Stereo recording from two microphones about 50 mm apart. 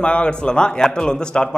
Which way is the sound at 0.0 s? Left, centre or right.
Left.